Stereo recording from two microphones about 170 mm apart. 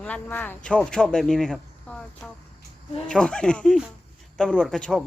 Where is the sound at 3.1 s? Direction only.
5° left (ahead or behind).